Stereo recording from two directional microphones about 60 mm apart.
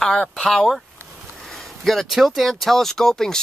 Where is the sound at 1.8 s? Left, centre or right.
Centre.